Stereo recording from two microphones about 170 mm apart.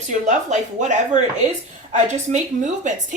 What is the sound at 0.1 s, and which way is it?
A woman's voice, 45° right (ahead or behind).